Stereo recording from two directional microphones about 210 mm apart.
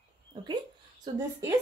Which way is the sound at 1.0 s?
20° right (ahead or behind).